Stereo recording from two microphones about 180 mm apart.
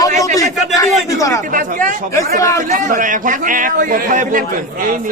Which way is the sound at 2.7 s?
45° right (ahead or behind).